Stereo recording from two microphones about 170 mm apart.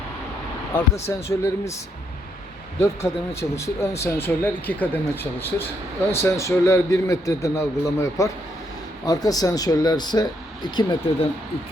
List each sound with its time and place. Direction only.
0.7 s a man's voice: 15° left (ahead or behind)
3.5 s a man's voice: 15° left (ahead or behind)